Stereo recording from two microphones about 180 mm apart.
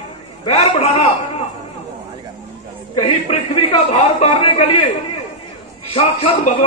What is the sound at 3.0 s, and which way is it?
A man's voice, 35° left (ahead or behind).